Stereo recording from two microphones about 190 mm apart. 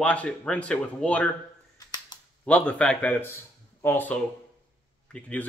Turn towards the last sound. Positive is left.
turn(degrees=5)  # may be behind; listen again after turning